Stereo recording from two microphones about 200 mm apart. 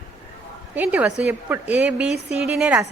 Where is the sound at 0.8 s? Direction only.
5° right (ahead or behind).